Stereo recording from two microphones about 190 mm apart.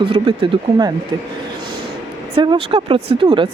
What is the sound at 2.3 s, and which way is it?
Speech, 25° right (ahead or behind).